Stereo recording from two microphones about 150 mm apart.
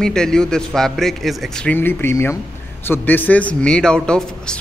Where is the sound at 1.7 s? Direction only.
15° left (ahead or behind).